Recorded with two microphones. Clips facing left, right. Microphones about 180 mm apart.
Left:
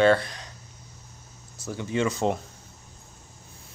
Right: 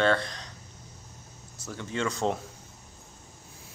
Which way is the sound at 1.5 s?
10° left (ahead or behind).